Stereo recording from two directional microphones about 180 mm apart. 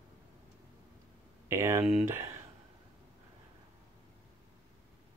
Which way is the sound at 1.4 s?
15° right (ahead or behind).